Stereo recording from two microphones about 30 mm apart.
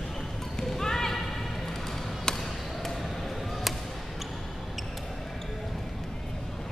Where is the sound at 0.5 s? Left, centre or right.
Centre.